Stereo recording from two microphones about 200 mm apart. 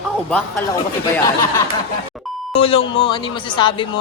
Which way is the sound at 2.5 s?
30° left (ahead or behind).